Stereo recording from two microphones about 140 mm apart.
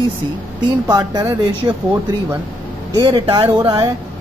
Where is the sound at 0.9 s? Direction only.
25° right (ahead or behind).